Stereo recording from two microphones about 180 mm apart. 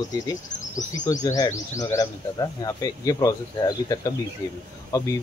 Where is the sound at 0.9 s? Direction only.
20° left (ahead or behind).